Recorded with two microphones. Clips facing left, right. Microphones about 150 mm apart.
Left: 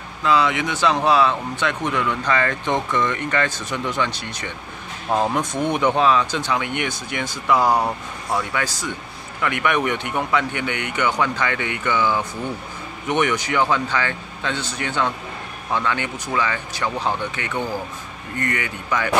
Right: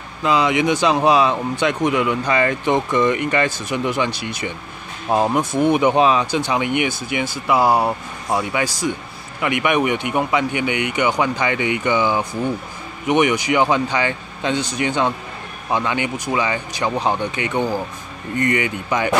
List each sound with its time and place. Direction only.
0.2 s speech: 20° right (ahead or behind)